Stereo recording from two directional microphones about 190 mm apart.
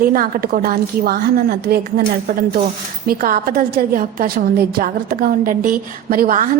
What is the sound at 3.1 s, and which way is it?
A woman's voice, 50° right (ahead or behind).